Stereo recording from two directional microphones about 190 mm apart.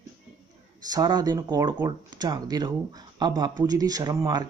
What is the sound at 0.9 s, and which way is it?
Speech, 20° right (ahead or behind).